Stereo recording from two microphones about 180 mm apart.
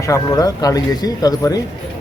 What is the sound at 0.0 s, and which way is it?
Speech, 20° left (ahead or behind).